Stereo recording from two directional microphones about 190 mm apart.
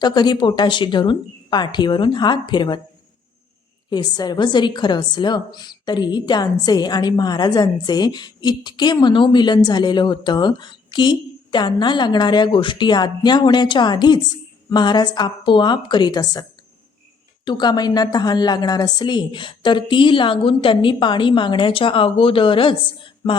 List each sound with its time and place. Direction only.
0.0 s a woman's voice: 25° left (ahead or behind)
3.8 s a woman's voice: 20° left (ahead or behind)